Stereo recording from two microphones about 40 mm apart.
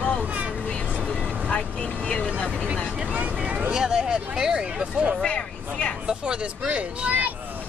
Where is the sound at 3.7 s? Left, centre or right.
Centre.